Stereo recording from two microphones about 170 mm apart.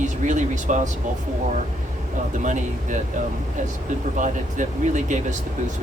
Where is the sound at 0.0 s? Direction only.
45° right (ahead or behind).